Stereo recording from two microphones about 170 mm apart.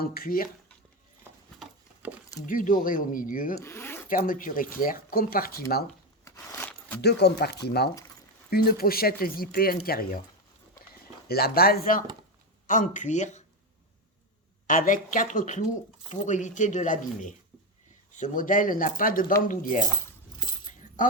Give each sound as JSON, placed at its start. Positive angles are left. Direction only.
{"t": 0.0, "sound": "speech", "side_deg": 60}
{"t": 1.5, "sound": "horse", "side_deg": -10}
{"t": 2.5, "sound": "speech", "side_deg": 50}
{"t": 3.6, "sound": "zipper", "side_deg": 15}
{"t": 4.1, "sound": "speech", "side_deg": 55}
{"t": 6.2, "sound": "a sound", "side_deg": 15}
{"t": 7.0, "sound": "speech", "side_deg": 75}
{"t": 11.3, "sound": "speech", "side_deg": 65}
{"t": 14.7, "sound": "speech", "side_deg": 50}
{"t": 20.7, "sound": "keys jangling", "side_deg": 50}